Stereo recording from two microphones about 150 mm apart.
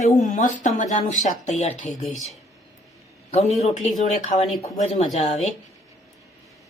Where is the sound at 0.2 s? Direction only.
55° left (ahead or behind).